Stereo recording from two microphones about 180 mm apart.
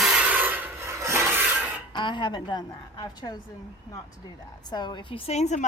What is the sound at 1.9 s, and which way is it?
A woman's voice, 25° left (ahead or behind).